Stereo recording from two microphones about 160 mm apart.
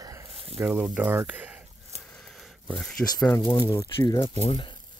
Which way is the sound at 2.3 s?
Centre (ahead or behind).